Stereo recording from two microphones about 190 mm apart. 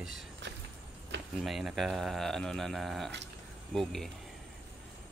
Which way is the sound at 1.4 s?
Centre (ahead or behind).